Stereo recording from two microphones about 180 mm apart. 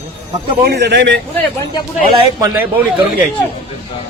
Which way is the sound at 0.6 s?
70° right (ahead or behind).